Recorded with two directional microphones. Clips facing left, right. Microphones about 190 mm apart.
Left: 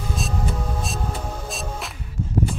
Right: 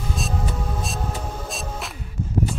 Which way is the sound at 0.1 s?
Centre (ahead or behind).